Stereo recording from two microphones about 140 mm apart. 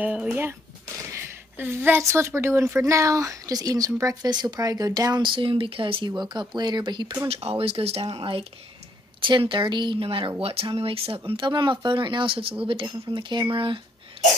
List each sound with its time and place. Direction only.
0.0 s a woman's voice: 10° right (ahead or behind); by 7.2 s 30° right (ahead or behind)
7.2 s speech: 45° right (ahead or behind)